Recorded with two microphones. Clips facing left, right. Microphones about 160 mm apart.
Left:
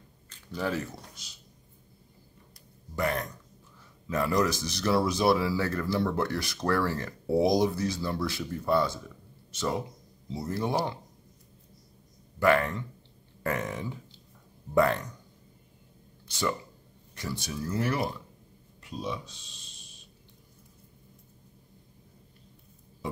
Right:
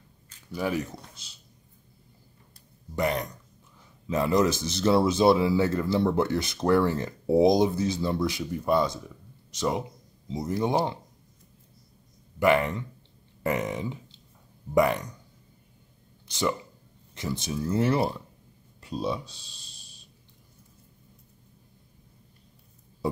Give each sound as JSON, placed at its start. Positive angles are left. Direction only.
{"t": 0.5, "sound": "speech", "side_deg": -15}
{"t": 3.0, "sound": "speech", "side_deg": -20}
{"t": 12.4, "sound": "speech", "side_deg": -20}
{"t": 16.3, "sound": "speech", "side_deg": -20}